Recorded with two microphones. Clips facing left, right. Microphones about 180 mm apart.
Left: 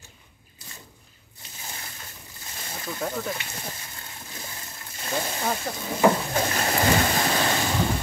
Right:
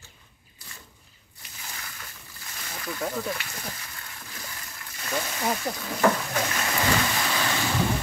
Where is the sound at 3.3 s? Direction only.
25° left (ahead or behind).